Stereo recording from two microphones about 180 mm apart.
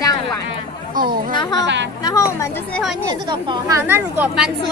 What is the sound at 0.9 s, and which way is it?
Speech, 50° right (ahead or behind).